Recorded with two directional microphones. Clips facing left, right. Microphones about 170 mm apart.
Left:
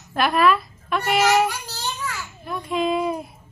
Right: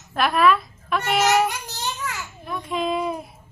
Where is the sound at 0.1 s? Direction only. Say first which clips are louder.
Even; centre (ahead or behind).